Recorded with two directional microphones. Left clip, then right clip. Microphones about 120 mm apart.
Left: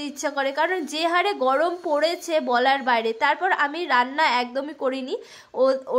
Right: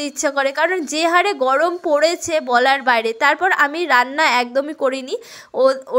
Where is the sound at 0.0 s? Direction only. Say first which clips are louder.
Right 7 dB; 35° right (ahead or behind).